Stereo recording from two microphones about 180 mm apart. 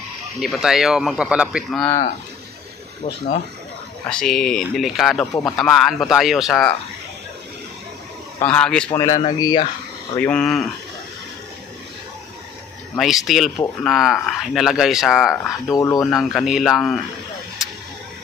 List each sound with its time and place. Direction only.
0.4 s speech: centre (ahead or behind)
4.1 s speech: 5° left (ahead or behind)
8.4 s a man's voice: 5° left (ahead or behind)
8.9 s a man's voice: 20° left (ahead or behind)
10.1 s speech: 5° left (ahead or behind)
12.9 s speech: centre (ahead or behind)
15.7 s a man's voice: 20° left (ahead or behind)
16.1 s speech: centre (ahead or behind)